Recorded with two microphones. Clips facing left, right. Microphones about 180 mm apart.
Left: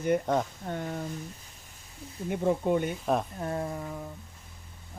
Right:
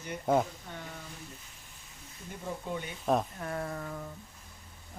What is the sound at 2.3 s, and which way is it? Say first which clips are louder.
Speech: left 12 dB; 60° left (ahead or behind).